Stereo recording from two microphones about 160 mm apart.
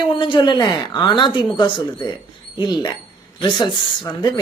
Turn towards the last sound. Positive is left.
turn(degrees=30)  # may be behind; listen again after turning